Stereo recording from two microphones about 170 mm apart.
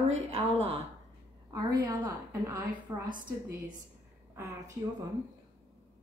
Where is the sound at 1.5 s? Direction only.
20° right (ahead or behind).